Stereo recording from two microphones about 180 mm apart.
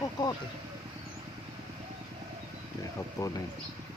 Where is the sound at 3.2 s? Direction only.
15° left (ahead or behind).